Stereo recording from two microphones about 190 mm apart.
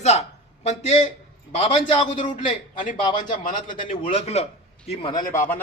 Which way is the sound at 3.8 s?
40° left (ahead or behind).